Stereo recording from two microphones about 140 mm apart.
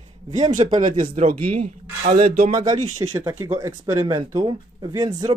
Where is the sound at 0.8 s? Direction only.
70° right (ahead or behind); by 2.3 s 50° right (ahead or behind).